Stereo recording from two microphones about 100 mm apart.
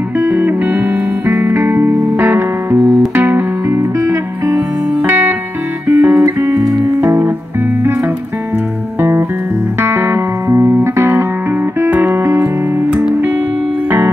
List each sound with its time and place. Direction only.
0.2 s music: 20° right (ahead or behind)
5.9 s guitar: 20° right (ahead or behind)
6.4 s music: 30° right (ahead or behind)
9.8 s music: 25° right (ahead or behind)
13.8 s music: 25° right (ahead or behind)